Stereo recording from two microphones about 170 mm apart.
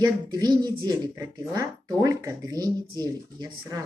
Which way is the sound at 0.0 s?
25° right (ahead or behind).